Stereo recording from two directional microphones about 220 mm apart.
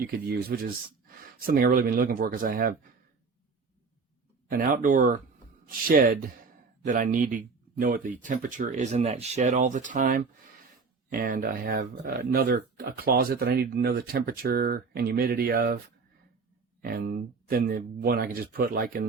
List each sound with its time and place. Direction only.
0.0 s speech: 45° right (ahead or behind)
4.4 s speech: 40° right (ahead or behind)
16.8 s speech: 40° right (ahead or behind)